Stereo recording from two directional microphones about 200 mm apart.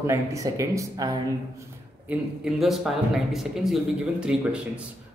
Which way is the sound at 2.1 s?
Centre (ahead or behind).